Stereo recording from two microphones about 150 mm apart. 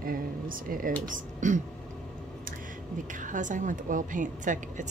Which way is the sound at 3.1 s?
60° right (ahead or behind).